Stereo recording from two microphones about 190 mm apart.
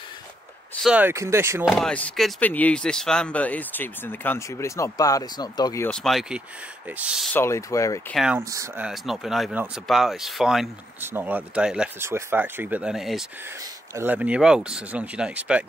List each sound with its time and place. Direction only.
0.8 s speech: 10° right (ahead or behind)
1.7 s speech: 5° left (ahead or behind); by 5.9 s 20° left (ahead or behind)
5.9 s speech: 5° left (ahead or behind)
7.3 s speech: 15° left (ahead or behind)
8.1 s speech: centre (ahead or behind)
8.4 s speech: 15° right (ahead or behind)
8.8 s speech: centre (ahead or behind)